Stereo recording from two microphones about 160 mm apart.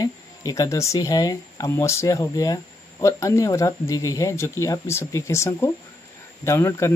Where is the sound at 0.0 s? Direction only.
25° left (ahead or behind).